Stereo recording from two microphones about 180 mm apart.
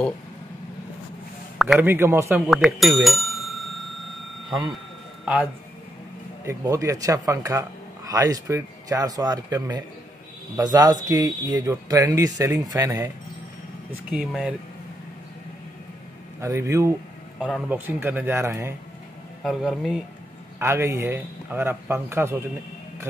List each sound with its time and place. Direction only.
1.6 s speech: 5° right (ahead or behind)
5.2 s speech: 5° right (ahead or behind)
6.4 s a man's voice: 15° right (ahead or behind)
14.1 s speech: centre (ahead or behind)
16.3 s a man's voice: 15° right (ahead or behind)
17.4 s a man's voice: 5° right (ahead or behind)
19.4 s speech: centre (ahead or behind)
20.5 s a man's voice: 15° right (ahead or behind)